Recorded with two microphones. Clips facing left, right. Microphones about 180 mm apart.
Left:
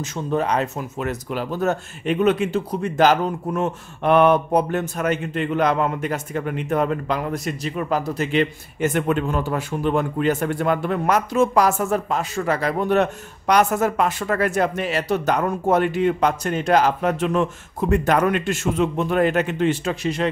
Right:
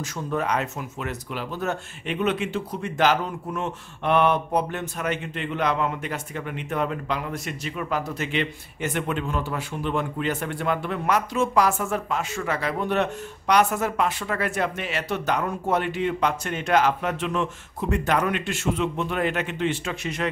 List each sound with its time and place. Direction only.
0.0 s speech: 25° left (ahead or behind)